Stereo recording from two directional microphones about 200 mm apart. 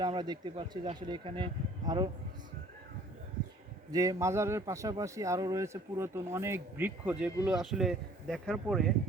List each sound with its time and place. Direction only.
0.0 s speech: 20° right (ahead or behind)
3.9 s speech: 15° right (ahead or behind); by 8.9 s centre (ahead or behind)